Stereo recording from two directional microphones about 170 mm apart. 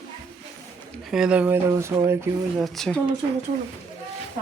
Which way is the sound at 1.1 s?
5° right (ahead or behind).